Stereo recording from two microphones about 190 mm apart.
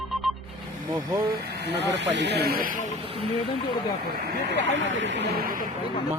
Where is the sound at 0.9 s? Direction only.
20° right (ahead or behind).